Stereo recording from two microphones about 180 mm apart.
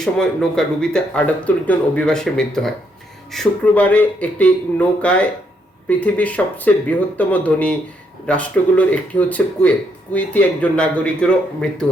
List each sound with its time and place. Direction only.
0.0 s speech: 5° left (ahead or behind)